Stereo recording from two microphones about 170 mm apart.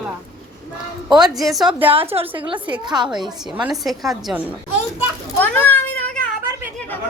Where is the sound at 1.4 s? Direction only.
Centre (ahead or behind).